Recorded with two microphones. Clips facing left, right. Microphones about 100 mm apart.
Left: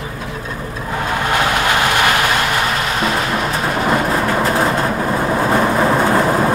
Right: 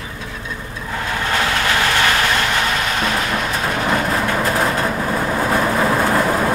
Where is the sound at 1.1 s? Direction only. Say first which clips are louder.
Left 3 dB; 20° left (ahead or behind).